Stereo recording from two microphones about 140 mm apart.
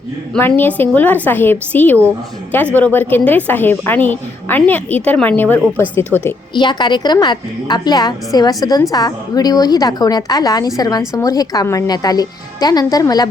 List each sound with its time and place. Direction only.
0.3 s a woman's voice: 15° left (ahead or behind)
6.5 s a woman's voice: 35° left (ahead or behind)